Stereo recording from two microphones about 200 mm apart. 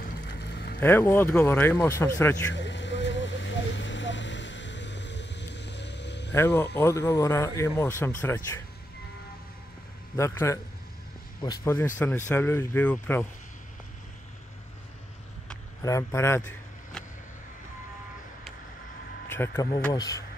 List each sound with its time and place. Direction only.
0.0 s boat: 50° left (ahead or behind)
0.7 s speech: 10° left (ahead or behind)
2.5 s vehicle: 65° left (ahead or behind)
6.3 s speech: 10° left (ahead or behind)
10.1 s speech: 15° left (ahead or behind)
15.8 s speech: 15° left (ahead or behind)
19.2 s a man's voice: 10° left (ahead or behind)